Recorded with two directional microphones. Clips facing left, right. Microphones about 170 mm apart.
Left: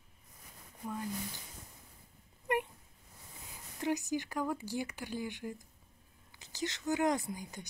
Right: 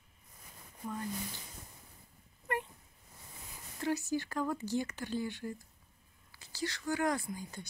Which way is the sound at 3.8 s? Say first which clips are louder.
Even; 15° left (ahead or behind).